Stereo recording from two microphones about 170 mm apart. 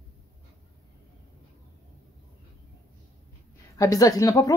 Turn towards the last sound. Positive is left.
turn(degrees=20)  # may be behind; listen again after turning